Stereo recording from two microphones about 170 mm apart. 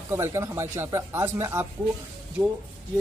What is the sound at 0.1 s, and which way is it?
Speech, 15° right (ahead or behind).